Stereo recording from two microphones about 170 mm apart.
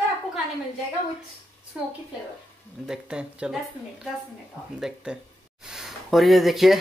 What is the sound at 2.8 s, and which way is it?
Speech, 5° right (ahead or behind).